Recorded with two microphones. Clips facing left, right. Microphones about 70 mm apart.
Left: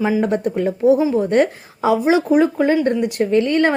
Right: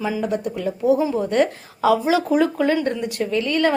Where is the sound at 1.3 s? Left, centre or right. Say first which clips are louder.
Left 3 dB; left.